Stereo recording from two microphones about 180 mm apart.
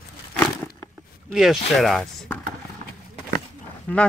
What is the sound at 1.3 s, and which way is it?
Speech, centre (ahead or behind).